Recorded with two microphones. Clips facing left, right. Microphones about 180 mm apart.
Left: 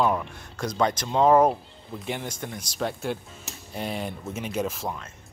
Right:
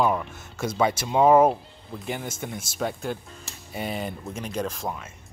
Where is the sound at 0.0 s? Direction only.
Centre (ahead or behind).